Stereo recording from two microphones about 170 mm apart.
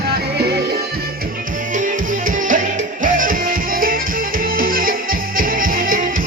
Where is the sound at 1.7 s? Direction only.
50° right (ahead or behind).